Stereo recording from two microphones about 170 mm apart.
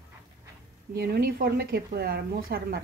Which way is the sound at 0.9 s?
65° right (ahead or behind).